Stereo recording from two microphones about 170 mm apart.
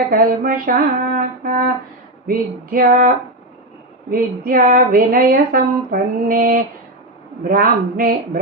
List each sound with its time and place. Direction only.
0.1 s a woman's voice: 55° right (ahead or behind)
4.1 s a woman's voice: 55° right (ahead or behind)